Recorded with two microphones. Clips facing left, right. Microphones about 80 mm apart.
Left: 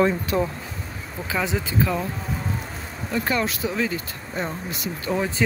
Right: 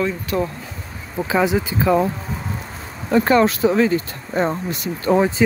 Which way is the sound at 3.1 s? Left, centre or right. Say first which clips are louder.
Right 10 dB; right.